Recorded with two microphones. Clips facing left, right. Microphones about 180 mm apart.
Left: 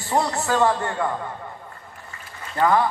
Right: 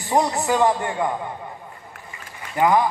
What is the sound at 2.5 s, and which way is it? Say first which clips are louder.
Speech: right 1 dB; 15° right (ahead or behind).